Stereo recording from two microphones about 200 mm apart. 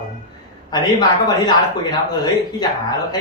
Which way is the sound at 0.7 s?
20° left (ahead or behind).